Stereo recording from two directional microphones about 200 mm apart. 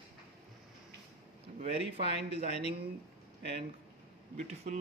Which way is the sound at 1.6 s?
30° right (ahead or behind).